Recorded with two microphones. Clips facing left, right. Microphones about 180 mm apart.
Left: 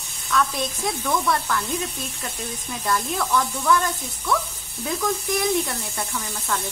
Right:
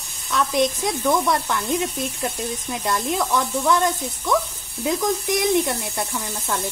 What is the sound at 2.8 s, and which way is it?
Speech, 20° right (ahead or behind).